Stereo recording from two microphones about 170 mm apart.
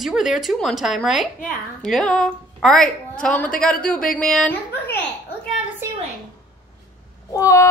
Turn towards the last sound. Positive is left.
turn(degrees=20)  # may be behind; listen again after turning